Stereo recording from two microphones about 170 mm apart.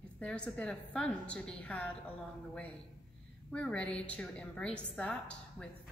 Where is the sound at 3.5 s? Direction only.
5° left (ahead or behind).